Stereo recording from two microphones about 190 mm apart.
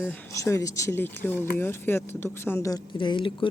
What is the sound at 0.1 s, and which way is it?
Speech, 15° left (ahead or behind).